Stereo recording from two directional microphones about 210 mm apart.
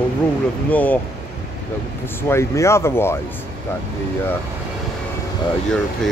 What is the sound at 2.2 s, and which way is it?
Speech, 10° left (ahead or behind).